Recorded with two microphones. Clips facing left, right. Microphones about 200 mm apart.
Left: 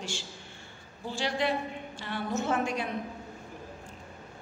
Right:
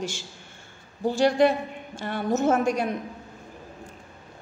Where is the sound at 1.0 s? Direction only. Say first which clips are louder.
Right 10 dB; 50° right (ahead or behind).